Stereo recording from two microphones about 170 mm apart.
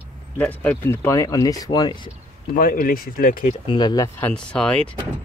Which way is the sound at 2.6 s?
55° left (ahead or behind).